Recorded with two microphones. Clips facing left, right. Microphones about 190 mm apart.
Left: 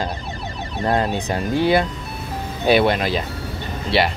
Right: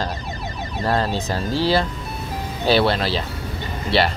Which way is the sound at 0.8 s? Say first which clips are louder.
Left 2 dB; 20° left (ahead or behind).